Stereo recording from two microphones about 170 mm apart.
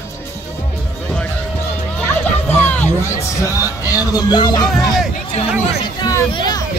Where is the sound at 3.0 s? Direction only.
15° left (ahead or behind).